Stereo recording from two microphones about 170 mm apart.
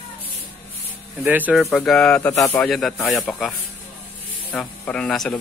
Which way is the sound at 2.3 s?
15° left (ahead or behind).